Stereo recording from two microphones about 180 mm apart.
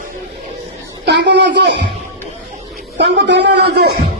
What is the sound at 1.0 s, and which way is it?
Speech, 75° right (ahead or behind).